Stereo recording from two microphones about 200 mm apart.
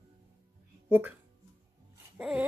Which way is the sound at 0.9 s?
10° right (ahead or behind).